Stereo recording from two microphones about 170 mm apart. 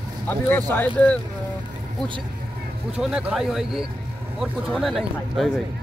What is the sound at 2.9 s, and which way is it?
Speech, 5° right (ahead or behind).